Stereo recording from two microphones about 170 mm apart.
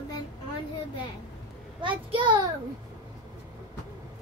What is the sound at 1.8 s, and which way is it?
Speech, 30° right (ahead or behind).